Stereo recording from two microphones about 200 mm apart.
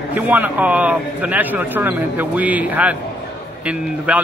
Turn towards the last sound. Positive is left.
turn(degrees=-5)  # may be behind; listen again after turning